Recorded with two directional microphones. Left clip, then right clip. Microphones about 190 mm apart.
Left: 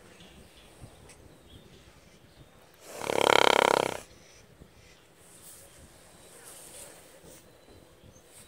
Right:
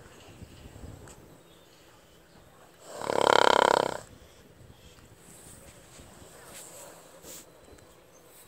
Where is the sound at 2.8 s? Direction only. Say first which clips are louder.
Right 1 dB; 30° left (ahead or behind).